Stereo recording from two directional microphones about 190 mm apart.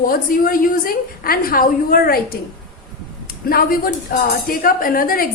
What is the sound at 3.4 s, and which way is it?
A woman's voice, 50° left (ahead or behind).